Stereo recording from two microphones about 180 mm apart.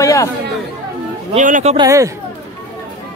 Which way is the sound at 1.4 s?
45° right (ahead or behind).